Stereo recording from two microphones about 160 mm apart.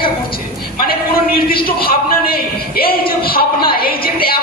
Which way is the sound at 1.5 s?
70° left (ahead or behind).